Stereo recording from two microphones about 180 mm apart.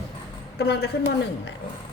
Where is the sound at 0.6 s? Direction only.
65° left (ahead or behind).